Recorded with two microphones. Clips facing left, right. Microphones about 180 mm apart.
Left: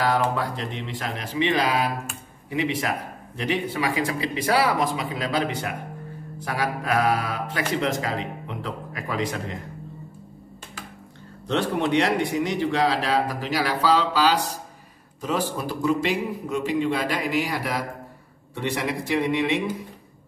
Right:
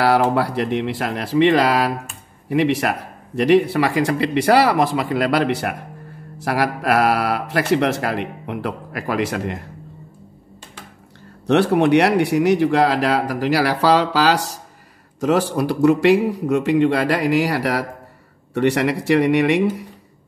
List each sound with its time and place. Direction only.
0.0 s speech: 75° right (ahead or behind)
11.4 s speech: 75° right (ahead or behind)